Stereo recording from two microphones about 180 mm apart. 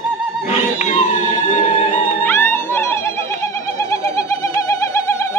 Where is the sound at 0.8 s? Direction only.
40° left (ahead or behind).